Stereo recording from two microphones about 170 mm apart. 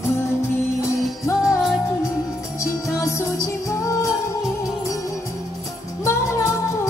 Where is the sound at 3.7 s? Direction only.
20° left (ahead or behind).